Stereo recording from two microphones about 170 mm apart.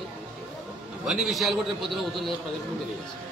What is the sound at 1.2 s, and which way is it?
A man's voice, centre (ahead or behind).